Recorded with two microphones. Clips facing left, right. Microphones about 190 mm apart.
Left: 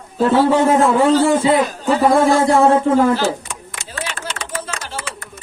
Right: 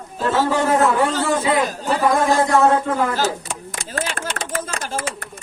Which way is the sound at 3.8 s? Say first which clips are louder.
Right 2 dB; 50° right (ahead or behind).